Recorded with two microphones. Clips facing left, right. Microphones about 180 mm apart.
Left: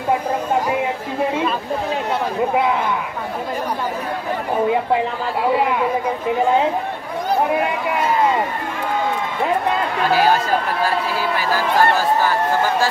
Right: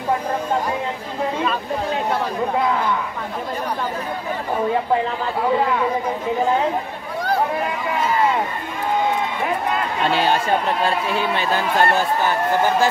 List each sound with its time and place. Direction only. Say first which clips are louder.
10.0 s speech: left 2 dB; 25° right (ahead or behind)